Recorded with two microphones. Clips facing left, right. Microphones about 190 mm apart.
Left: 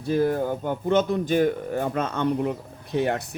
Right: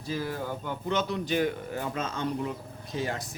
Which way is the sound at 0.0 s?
55° left (ahead or behind).